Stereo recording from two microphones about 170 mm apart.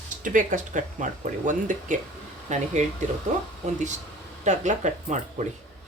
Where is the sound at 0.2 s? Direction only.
50° right (ahead or behind).